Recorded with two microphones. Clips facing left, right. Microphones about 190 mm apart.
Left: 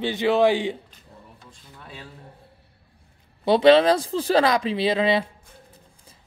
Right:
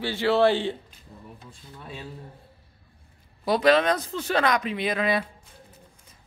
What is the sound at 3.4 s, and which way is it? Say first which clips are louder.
Speech: left 5 dB; 25° left (ahead or behind).